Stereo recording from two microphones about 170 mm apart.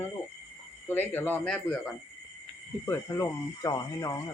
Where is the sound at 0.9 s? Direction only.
10° left (ahead or behind).